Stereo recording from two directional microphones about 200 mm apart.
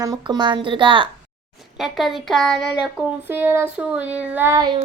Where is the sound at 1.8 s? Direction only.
Centre (ahead or behind).